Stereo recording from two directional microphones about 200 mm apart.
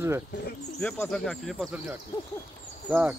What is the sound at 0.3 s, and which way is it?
Speech, 55° left (ahead or behind).